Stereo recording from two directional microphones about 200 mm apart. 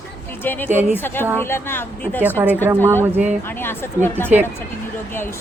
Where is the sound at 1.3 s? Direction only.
10° left (ahead or behind).